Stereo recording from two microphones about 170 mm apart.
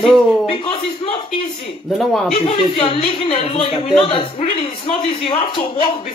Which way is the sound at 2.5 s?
35° left (ahead or behind).